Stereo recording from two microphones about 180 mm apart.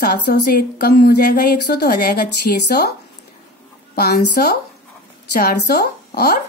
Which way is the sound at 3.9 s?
60° left (ahead or behind).